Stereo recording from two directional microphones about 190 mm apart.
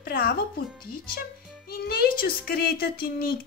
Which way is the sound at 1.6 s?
50° left (ahead or behind).